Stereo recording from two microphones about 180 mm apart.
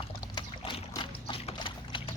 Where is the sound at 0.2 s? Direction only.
25° left (ahead or behind).